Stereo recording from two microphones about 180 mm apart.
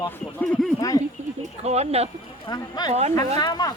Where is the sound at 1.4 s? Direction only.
35° right (ahead or behind).